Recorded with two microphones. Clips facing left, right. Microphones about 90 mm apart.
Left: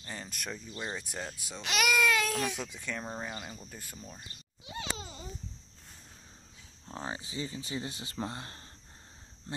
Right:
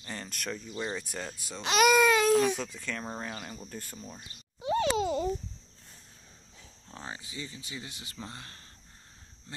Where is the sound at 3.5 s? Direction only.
5° right (ahead or behind).